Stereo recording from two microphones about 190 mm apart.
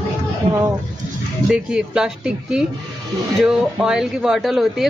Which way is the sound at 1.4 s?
5° right (ahead or behind).